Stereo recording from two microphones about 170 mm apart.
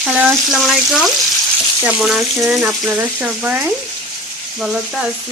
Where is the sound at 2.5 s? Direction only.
Centre (ahead or behind).